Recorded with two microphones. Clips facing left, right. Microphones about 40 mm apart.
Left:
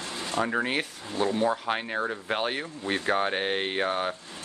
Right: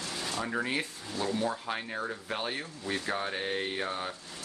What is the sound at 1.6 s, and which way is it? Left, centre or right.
Speech, left.